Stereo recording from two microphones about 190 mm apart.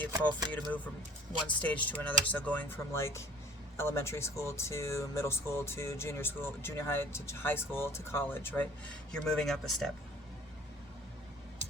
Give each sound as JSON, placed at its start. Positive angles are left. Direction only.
{"t": 0.1, "sound": "speech", "side_deg": -20}
{"t": 1.5, "sound": "speech", "side_deg": 10}